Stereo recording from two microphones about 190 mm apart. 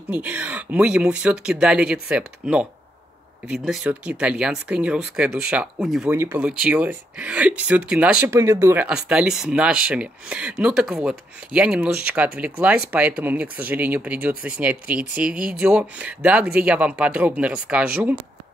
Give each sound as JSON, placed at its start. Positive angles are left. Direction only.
{"t": 0.1, "sound": "speech", "side_deg": -10}